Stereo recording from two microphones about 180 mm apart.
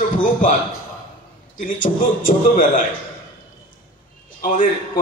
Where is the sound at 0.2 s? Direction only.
45° left (ahead or behind).